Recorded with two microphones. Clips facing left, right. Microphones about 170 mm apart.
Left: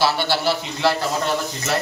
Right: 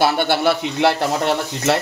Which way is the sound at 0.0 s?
55° right (ahead or behind).